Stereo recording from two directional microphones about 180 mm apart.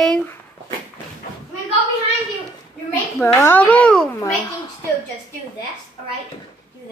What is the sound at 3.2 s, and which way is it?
Speech, 15° left (ahead or behind).